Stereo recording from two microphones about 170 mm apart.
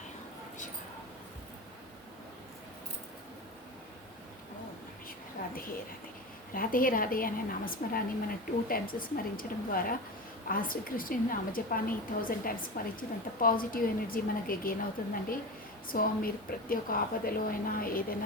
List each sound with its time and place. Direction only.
6.5 s a woman's voice: 55° left (ahead or behind)
15.9 s a woman's voice: 55° left (ahead or behind)